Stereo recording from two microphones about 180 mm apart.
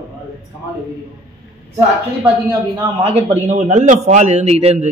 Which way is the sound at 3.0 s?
35° right (ahead or behind).